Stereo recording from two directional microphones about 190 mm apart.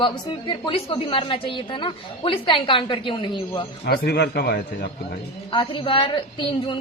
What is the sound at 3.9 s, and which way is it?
A man's voice, 60° left (ahead or behind).